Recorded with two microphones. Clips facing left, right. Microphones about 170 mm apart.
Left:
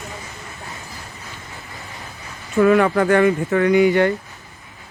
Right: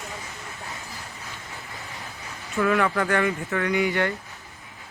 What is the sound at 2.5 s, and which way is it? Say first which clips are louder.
A man's voice: left 8 dB; 25° left (ahead or behind).